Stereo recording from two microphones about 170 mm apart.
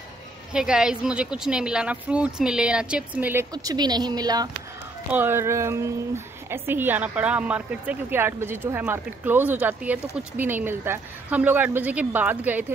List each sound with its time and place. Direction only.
0.5 s a woman's voice: 5° right (ahead or behind)
3.5 s a woman's voice: 25° right (ahead or behind)